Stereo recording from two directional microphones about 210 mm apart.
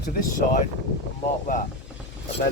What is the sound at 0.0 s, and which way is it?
Speech, 40° left (ahead or behind).